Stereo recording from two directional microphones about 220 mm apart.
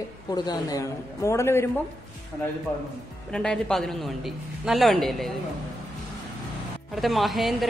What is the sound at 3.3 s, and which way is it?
A woman's voice, 5° left (ahead or behind).